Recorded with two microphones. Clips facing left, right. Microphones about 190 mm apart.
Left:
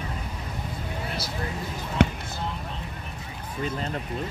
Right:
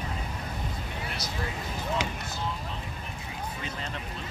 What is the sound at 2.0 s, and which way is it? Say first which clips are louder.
Basketball bounce: left 11 dB; 60° left (ahead or behind).